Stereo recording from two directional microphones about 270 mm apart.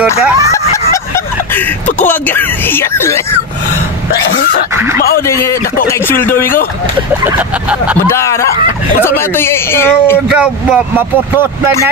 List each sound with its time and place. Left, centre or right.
2.0 s speech: centre
4.1 s throat clearing: left
5.2 s speech: centre
7.2 s speech: centre
8.1 s speech: centre
10.3 s speech: centre